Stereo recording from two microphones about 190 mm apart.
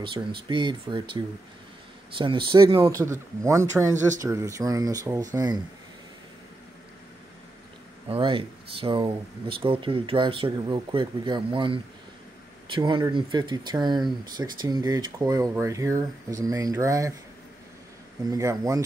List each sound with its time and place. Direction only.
0.0 s speech: 25° right (ahead or behind)
8.1 s speech: 25° right (ahead or behind)
18.3 s speech: 15° right (ahead or behind)